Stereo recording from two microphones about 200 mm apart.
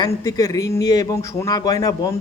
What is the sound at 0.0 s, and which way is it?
A man's voice, 20° left (ahead or behind).